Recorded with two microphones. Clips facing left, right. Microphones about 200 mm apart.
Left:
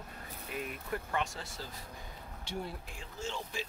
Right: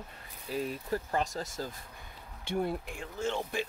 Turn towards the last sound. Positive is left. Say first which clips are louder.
# right 7 dB
turn(degrees=-55)  # may be behind; listen again after turning